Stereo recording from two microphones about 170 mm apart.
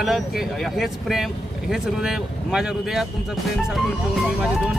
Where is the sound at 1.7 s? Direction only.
5° right (ahead or behind).